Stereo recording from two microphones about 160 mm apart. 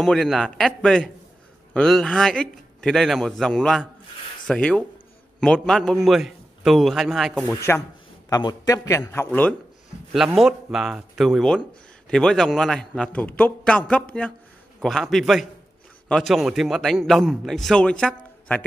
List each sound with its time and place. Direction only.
0.0 s a man's voice: 5° left (ahead or behind)
7.4 s a man's voice: 15° left (ahead or behind)
10.1 s a man's voice: centre (ahead or behind)